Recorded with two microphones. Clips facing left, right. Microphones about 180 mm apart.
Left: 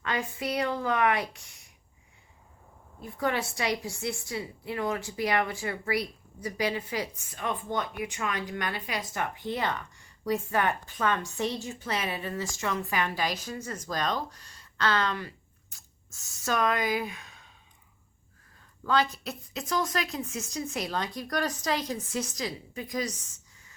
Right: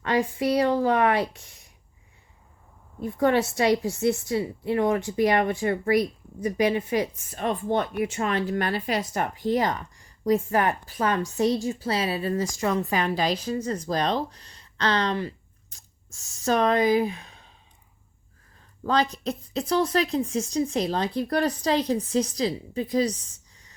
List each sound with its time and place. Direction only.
0.0 s a woman's voice: 30° right (ahead or behind)
3.0 s a woman's voice: 25° right (ahead or behind)
6.0 s a woman's voice: 20° right (ahead or behind)
7.3 s speech: 45° right (ahead or behind)
18.8 s speech: 35° right (ahead or behind)